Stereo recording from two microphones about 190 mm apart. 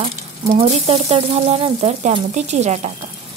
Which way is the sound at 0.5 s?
35° right (ahead or behind).